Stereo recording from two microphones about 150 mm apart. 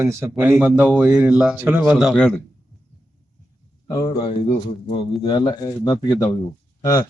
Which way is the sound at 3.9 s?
30° left (ahead or behind).